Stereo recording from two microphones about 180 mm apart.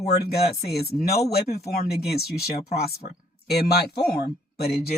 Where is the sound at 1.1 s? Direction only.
35° left (ahead or behind).